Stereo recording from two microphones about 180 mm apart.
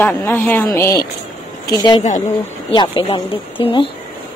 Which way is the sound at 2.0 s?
40° left (ahead or behind).